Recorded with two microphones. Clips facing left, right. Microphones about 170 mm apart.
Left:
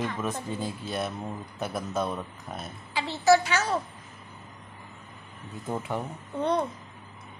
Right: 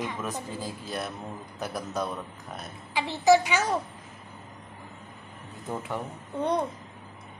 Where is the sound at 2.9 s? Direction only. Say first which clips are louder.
Right 1 dB; 15° right (ahead or behind).